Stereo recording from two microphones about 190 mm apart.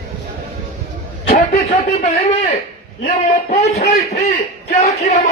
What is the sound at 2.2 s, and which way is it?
A man's voice, 35° left (ahead or behind).